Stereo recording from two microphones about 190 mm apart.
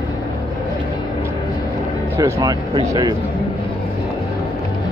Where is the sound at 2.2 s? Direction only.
20° right (ahead or behind).